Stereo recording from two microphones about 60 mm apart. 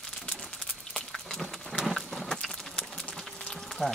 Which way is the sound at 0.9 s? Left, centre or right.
Centre.